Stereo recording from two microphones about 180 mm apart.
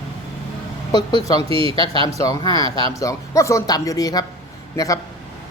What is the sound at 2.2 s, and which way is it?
Speech, 20° left (ahead or behind).